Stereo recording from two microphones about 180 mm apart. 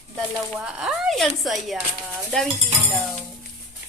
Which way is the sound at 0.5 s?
5° right (ahead or behind).